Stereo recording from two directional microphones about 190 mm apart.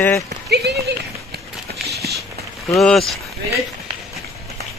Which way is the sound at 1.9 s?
55° right (ahead or behind).